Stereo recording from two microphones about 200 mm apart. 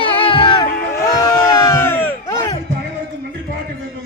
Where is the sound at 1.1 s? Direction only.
20° left (ahead or behind).